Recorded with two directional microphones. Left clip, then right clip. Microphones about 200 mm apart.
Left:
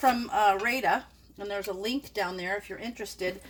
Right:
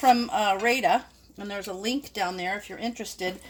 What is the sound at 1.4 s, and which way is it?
Speech, 35° right (ahead or behind).